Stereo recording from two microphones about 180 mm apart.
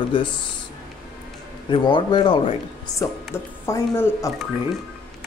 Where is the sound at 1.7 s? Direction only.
25° left (ahead or behind).